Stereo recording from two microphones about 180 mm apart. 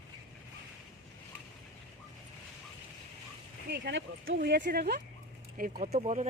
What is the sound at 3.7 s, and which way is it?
Speech, 80° right.